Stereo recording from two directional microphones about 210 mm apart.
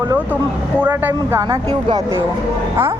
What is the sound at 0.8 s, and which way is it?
Speech, 10° right (ahead or behind).